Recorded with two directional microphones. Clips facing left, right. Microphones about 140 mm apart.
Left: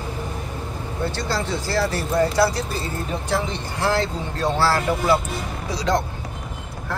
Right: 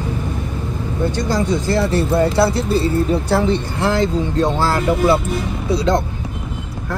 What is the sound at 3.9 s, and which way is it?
Speech, 20° right (ahead or behind).